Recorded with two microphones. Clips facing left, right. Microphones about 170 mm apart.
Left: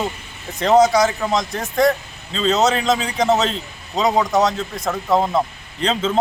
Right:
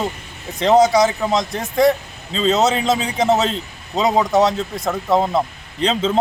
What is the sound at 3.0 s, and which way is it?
Speech, 20° right (ahead or behind).